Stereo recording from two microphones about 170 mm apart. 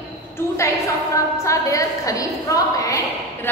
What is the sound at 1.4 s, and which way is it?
A woman's voice, 20° left (ahead or behind).